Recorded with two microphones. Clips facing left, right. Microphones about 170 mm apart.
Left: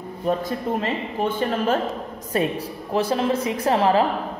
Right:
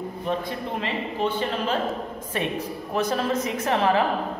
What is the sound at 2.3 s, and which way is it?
A woman's voice, 40° left (ahead or behind).